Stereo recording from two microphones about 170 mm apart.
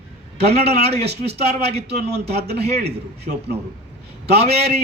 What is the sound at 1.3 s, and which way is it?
Speech, 70° right (ahead or behind).